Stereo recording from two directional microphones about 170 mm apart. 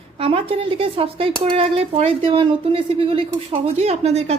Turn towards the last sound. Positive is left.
turn(degrees=-40)  # may be behind; listen again after turning